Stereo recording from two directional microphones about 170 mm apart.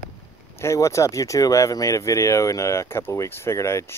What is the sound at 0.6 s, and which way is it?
Speech, 15° left (ahead or behind).